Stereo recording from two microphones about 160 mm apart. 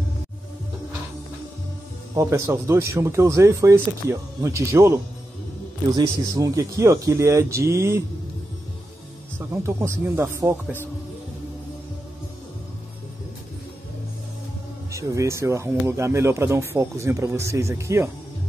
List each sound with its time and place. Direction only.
2.1 s speech: 20° right (ahead or behind)
5.9 s speech: 20° right (ahead or behind)
9.5 s speech: 15° right (ahead or behind)
14.9 s speech: 20° right (ahead or behind)